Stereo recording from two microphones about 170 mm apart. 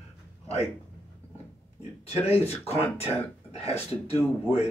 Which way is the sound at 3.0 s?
35° left (ahead or behind).